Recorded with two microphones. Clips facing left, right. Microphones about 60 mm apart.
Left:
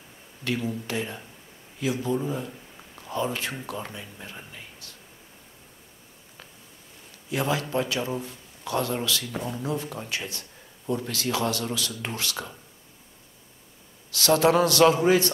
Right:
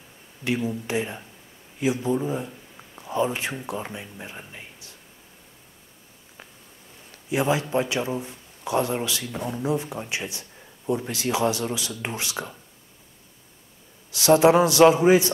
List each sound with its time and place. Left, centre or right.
0.4 s speech: centre
7.2 s speech: right
14.1 s speech: centre